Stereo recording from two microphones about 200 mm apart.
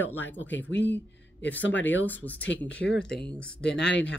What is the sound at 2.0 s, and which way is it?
Speech, 10° left (ahead or behind).